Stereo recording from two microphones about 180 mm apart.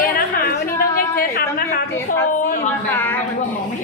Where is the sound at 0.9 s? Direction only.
55° left (ahead or behind).